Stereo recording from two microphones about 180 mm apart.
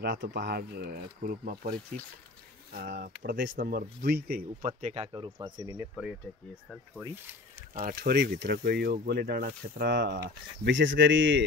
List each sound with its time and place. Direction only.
0.0 s speech: 75° right (ahead or behind)
1.2 s speech: 50° right (ahead or behind)
2.7 s speech: 60° right (ahead or behind)
3.5 s speech: 55° right (ahead or behind)
4.6 s speech: 45° right (ahead or behind)
5.1 s speech: 20° right (ahead or behind)
6.3 s speech: 10° left (ahead or behind)
7.0 s speech: 15° right (ahead or behind)
7.8 s speech: 60° right (ahead or behind)
10.6 s speech: 90° right